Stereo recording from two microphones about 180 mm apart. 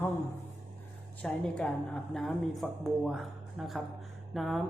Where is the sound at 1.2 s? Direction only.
5° left (ahead or behind).